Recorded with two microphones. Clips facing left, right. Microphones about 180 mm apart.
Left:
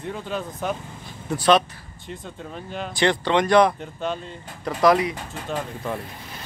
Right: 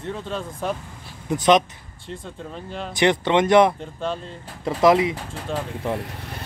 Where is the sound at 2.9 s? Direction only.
20° right (ahead or behind).